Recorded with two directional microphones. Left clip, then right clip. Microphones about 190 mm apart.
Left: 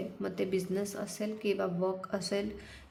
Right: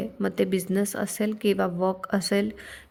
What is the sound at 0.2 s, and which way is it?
Speech, 40° right (ahead or behind).